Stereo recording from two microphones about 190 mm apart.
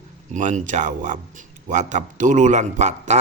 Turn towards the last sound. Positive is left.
turn(degrees=-40)  # may be behind; listen again after turning